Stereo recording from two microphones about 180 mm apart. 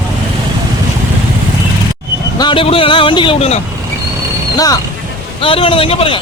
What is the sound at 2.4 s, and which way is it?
Speech, 25° left (ahead or behind).